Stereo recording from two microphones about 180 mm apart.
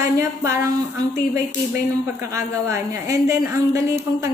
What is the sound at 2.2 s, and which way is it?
A woman's voice, 15° right (ahead or behind).